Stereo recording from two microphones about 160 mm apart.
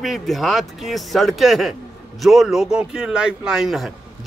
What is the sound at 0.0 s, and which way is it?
Speech, centre (ahead or behind).